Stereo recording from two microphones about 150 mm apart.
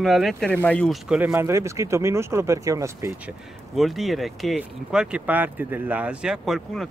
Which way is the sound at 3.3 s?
Centre (ahead or behind).